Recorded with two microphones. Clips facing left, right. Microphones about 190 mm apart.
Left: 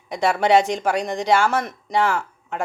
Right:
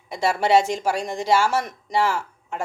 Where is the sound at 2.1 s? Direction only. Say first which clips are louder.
Left 3 dB; 60° left (ahead or behind).